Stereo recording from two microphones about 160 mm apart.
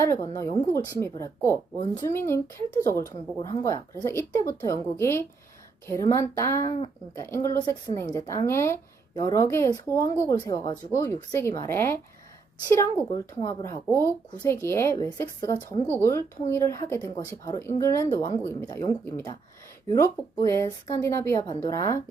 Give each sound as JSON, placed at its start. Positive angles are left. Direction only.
{"t": 0.0, "sound": "a woman's voice", "side_deg": 20}